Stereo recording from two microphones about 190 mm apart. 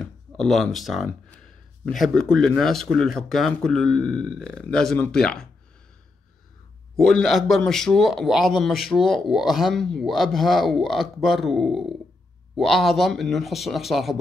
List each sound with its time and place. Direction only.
0.0 s a man's voice: centre (ahead or behind)
7.0 s a man's voice: centre (ahead or behind)